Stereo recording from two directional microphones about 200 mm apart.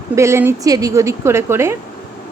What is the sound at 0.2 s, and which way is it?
A woman's voice, 15° right (ahead or behind).